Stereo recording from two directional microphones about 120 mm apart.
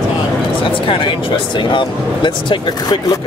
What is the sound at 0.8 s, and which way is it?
Speech, 45° left (ahead or behind).